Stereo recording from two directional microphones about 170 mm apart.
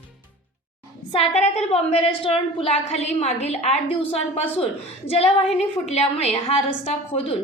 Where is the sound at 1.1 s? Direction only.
40° left (ahead or behind).